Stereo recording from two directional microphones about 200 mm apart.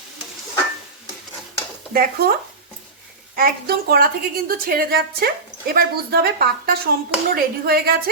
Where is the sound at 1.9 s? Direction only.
50° right (ahead or behind).